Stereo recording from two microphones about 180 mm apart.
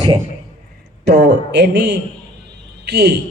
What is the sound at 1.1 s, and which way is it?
Speech, 70° right (ahead or behind).